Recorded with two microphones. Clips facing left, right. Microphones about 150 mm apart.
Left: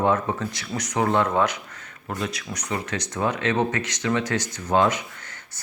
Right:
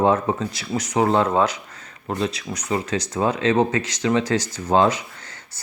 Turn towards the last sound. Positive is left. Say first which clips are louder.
# right 3 dB
turn(degrees=-30)  # may be behind; listen again after turning